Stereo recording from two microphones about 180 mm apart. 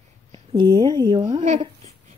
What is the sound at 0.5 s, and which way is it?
Speech, 25° right (ahead or behind).